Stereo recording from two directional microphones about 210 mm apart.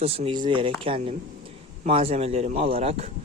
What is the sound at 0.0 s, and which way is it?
Speech, 30° right (ahead or behind).